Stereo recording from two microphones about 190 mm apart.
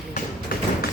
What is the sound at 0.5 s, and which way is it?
Thump, 50° left (ahead or behind).